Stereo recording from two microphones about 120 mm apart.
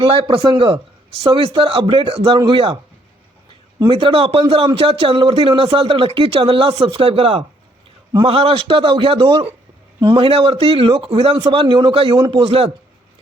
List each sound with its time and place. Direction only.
0.0 s a man's voice: 45° right (ahead or behind)
3.8 s a man's voice: 45° right (ahead or behind)